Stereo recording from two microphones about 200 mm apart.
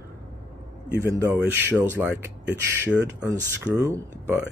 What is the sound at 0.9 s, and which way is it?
Speech, 10° right (ahead or behind).